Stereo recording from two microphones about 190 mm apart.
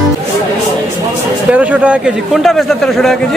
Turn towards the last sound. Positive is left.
turn(degrees=0)  # may be behind; listen again after turning